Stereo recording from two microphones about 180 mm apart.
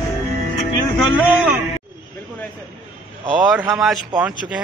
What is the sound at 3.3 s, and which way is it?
Music, 5° right (ahead or behind).